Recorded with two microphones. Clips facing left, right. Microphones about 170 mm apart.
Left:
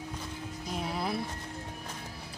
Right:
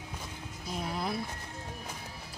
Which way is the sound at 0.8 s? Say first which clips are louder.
Left 1 dB; centre (ahead or behind).